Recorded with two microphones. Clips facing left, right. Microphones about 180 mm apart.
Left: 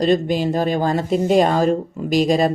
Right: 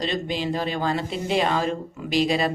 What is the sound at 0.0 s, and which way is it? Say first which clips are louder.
Speech: left 9 dB; 45° left (ahead or behind).